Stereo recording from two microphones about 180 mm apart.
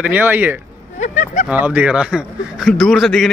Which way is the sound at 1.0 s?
40° left (ahead or behind).